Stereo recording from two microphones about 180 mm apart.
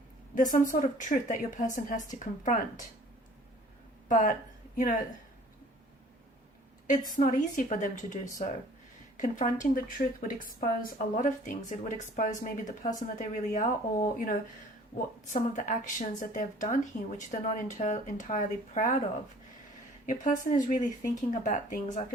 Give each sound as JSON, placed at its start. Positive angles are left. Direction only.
{"t": 0.3, "sound": "speech", "side_deg": 45}
{"t": 4.1, "sound": "speech", "side_deg": 45}
{"t": 7.2, "sound": "speech", "side_deg": 45}
{"t": 20.1, "sound": "speech", "side_deg": 45}